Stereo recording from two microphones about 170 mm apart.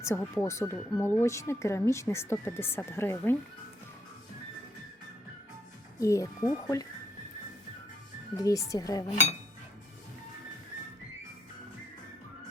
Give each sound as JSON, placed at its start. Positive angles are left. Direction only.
{"t": 0.0, "sound": "speech", "side_deg": 15}
{"t": 6.0, "sound": "speech", "side_deg": 20}
{"t": 8.4, "sound": "speech", "side_deg": 20}